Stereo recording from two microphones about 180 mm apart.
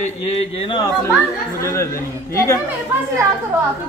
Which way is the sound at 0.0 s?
40° left (ahead or behind).